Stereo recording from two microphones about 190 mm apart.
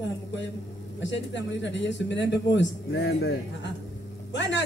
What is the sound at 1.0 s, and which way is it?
Speech, 70° left (ahead or behind).